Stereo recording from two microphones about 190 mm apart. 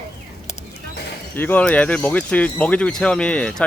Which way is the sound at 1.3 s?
10° left (ahead or behind).